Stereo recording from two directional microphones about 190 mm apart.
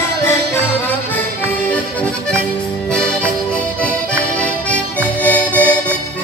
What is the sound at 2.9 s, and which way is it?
Music, 5° left (ahead or behind).